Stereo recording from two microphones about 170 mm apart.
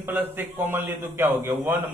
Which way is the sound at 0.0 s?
10° right (ahead or behind).